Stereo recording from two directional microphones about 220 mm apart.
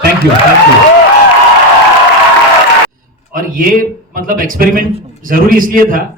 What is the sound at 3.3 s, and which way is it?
Speech, 40° right (ahead or behind).